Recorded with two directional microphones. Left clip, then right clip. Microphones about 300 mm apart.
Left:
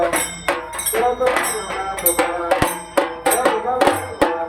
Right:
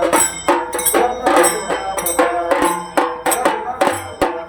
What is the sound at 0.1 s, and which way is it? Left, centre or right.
Music, centre.